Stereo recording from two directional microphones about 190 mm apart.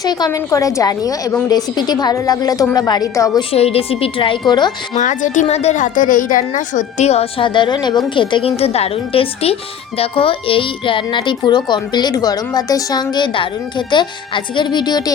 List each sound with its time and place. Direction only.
0.0 s a woman's voice: 20° left (ahead or behind)
3.5 s speech: 30° left (ahead or behind)
4.9 s a woman's voice: 40° left (ahead or behind); by 15.1 s 20° left (ahead or behind)